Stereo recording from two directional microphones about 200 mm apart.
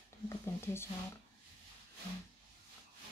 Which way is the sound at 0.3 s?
10° left (ahead or behind).